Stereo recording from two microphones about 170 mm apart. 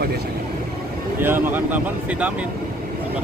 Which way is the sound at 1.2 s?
10° right (ahead or behind).